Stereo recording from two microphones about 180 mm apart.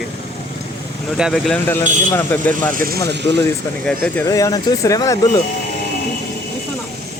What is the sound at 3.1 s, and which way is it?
Speech, 75° right (ahead or behind).